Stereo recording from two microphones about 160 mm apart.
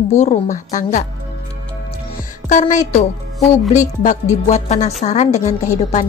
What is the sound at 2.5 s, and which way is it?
A woman's voice, 50° left (ahead or behind).